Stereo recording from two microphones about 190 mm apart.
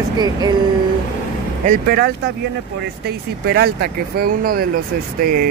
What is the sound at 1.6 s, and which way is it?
Speech, 50° right (ahead or behind).